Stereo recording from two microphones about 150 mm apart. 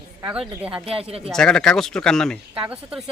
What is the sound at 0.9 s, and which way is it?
Speech, 40° right (ahead or behind).